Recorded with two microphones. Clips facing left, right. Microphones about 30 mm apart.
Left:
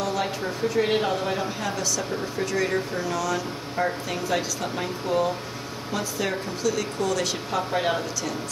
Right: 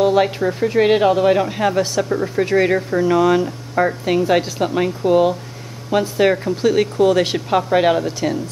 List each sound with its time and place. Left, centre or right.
0.0 s speech: right